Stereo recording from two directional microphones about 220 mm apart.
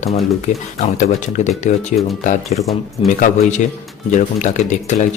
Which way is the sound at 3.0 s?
25° left (ahead or behind).